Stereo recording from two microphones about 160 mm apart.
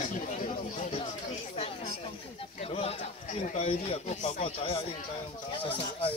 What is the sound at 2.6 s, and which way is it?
A man's voice, 35° left (ahead or behind).